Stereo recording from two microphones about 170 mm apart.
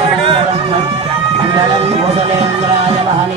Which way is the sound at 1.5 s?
35° right (ahead or behind).